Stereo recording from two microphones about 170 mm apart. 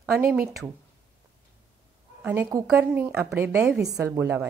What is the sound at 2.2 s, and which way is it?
A woman's voice, 10° right (ahead or behind).